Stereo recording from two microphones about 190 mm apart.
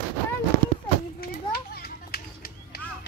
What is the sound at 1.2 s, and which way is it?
Children playing, 55° left (ahead or behind).